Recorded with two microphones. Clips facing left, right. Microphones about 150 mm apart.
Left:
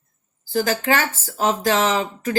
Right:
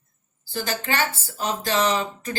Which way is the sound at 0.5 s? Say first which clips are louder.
Left 7 dB; 45° left (ahead or behind).